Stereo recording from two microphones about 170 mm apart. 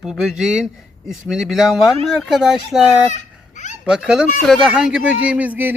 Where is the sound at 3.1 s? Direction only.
45° left (ahead or behind).